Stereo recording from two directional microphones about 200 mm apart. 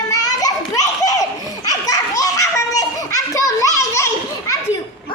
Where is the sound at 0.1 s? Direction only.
20° left (ahead or behind).